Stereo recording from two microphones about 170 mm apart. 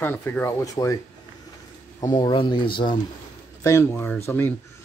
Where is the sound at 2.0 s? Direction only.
25° left (ahead or behind).